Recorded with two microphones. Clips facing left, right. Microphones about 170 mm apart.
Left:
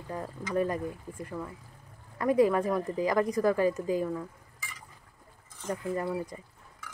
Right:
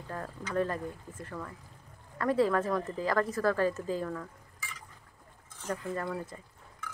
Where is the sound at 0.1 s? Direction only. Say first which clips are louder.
Left 3 dB; 10° left (ahead or behind).